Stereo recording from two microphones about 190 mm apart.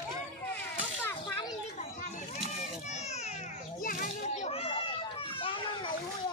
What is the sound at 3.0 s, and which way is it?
Children playing, 35° left (ahead or behind).